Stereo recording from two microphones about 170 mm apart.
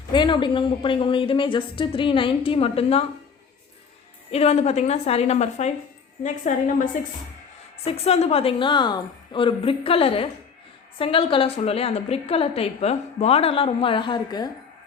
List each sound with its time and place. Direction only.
0.1 s a woman's voice: 25° left (ahead or behind)
4.3 s a woman's voice: 40° left (ahead or behind)
7.9 s a woman's voice: 35° left (ahead or behind)